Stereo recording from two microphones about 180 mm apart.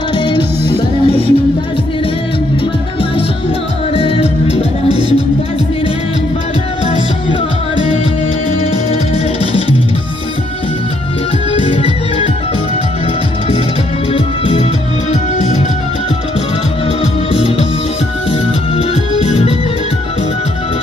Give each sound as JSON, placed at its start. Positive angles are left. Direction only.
{"t": 0.2, "sound": "music", "side_deg": 25}
{"t": 3.9, "sound": "music", "side_deg": 35}
{"t": 9.4, "sound": "music", "side_deg": 30}
{"t": 11.5, "sound": "music", "side_deg": 30}
{"t": 14.1, "sound": "music", "side_deg": 30}
{"t": 15.3, "sound": "music", "side_deg": 40}
{"t": 17.0, "sound": "music", "side_deg": 35}
{"t": 19.2, "sound": "music", "side_deg": 35}